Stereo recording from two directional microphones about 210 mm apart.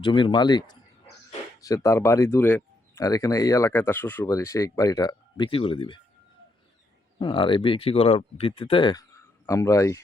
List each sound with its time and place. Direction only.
0.0 s speech: 25° left (ahead or behind)
7.2 s speech: 25° left (ahead or behind)